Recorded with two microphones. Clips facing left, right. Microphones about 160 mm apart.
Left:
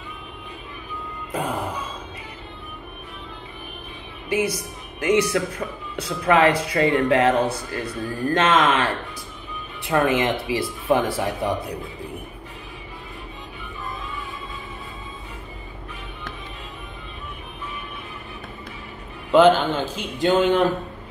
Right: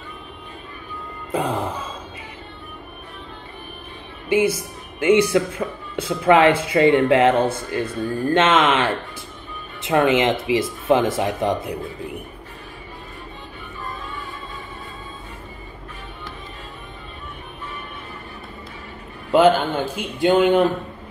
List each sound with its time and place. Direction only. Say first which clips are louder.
1.3 s music: right 4 dB; 25° right (ahead or behind)
4.3 s speech: right 5 dB; 25° right (ahead or behind)
19.3 s a man's voice: even; 10° right (ahead or behind)